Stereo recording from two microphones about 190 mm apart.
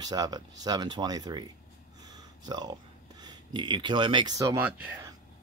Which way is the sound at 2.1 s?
20° right (ahead or behind).